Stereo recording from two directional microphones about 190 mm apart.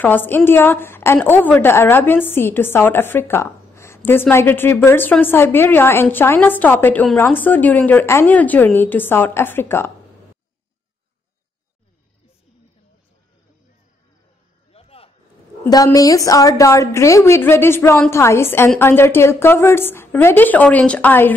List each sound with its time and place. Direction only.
0.0 s a woman's voice: 10° left (ahead or behind)
14.7 s a sound: 30° left (ahead or behind)
15.6 s a woman's voice: 20° left (ahead or behind)